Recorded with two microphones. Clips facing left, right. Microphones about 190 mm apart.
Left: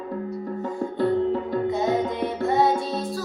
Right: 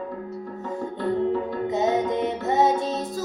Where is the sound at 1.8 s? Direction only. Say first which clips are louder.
Right 1 dB; 20° right (ahead or behind).